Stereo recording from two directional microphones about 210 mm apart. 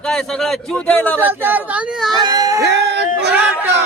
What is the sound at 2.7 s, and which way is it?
Speech, 55° right (ahead or behind).